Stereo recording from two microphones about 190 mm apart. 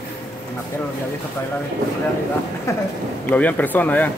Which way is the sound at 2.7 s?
15° left (ahead or behind).